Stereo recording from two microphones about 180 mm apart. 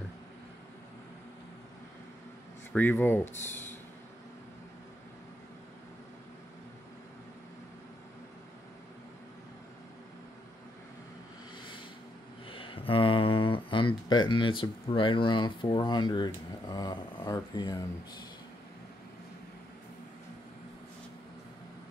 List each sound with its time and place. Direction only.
2.7 s speech: 10° left (ahead or behind)
12.4 s speech: 30° left (ahead or behind)